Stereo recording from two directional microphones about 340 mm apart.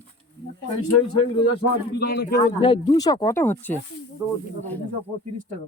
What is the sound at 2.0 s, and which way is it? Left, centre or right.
Speech, left.